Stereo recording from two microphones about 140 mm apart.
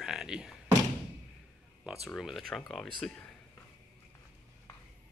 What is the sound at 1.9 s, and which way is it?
Speech, centre (ahead or behind).